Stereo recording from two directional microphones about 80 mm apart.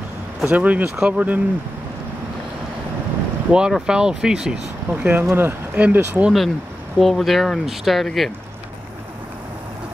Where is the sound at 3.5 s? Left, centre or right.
Centre.